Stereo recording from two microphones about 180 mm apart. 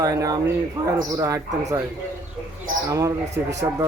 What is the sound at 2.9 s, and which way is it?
Speech, 20° right (ahead or behind).